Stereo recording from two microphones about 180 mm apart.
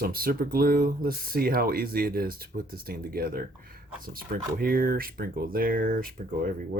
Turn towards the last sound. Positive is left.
turn(degrees=-55)  # may be behind; listen again after turning